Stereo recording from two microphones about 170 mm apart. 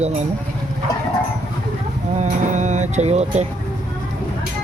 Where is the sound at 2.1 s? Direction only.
45° right (ahead or behind).